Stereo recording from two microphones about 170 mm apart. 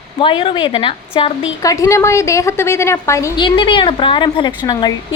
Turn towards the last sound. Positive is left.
turn(degrees=25)  # may be behind; listen again after turning